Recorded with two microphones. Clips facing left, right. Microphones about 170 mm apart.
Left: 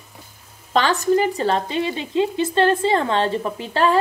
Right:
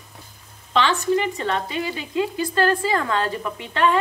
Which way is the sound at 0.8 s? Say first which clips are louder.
Left 3 dB; 40° left (ahead or behind).